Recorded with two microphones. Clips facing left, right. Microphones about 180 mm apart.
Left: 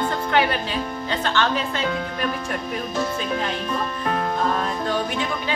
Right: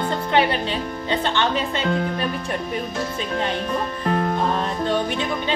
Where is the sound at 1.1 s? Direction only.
20° right (ahead or behind).